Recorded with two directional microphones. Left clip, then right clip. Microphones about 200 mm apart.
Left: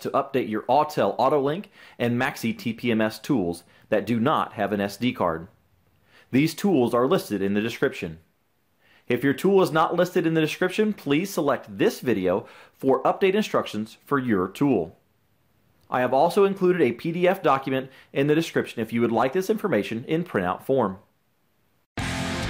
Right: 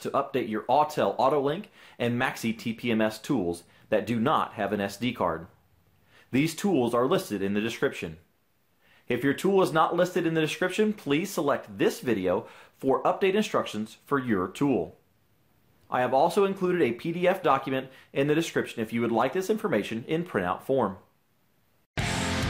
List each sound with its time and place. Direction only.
0.0 s speech: 40° left (ahead or behind)
15.9 s speech: 40° left (ahead or behind)